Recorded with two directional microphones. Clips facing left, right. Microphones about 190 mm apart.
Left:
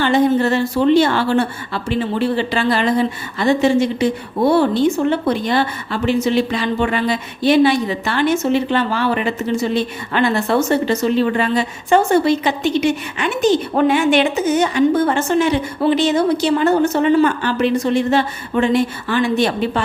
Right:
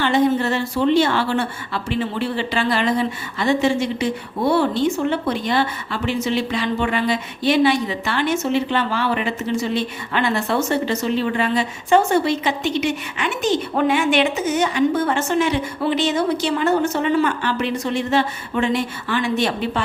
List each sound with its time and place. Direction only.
0.0 s a woman's voice: 40° left (ahead or behind)
5.0 s a woman's voice: 40° left (ahead or behind)